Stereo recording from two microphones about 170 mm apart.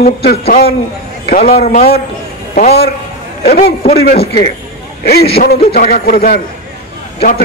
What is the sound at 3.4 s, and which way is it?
Speech, 65° left (ahead or behind).